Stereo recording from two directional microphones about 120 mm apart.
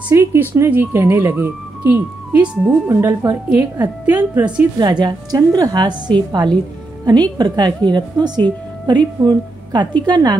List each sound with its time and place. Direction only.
0.1 s speech: 20° right (ahead or behind)
2.9 s a woman's voice: 25° right (ahead or behind)
4.7 s a woman's voice: 35° right (ahead or behind)